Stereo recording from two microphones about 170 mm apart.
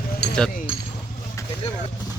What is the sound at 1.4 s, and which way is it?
Vehicle, 20° left (ahead or behind).